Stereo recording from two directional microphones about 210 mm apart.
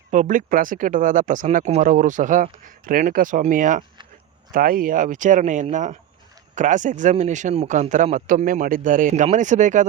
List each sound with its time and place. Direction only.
0.1 s speech: 35° right (ahead or behind)